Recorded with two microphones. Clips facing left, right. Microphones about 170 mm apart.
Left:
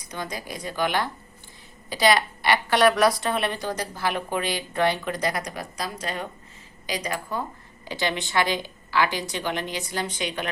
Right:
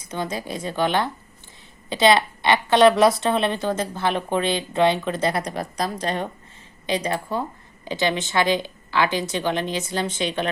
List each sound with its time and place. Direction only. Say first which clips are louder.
0.0 s a woman's voice: right 5 dB; 25° right (ahead or behind)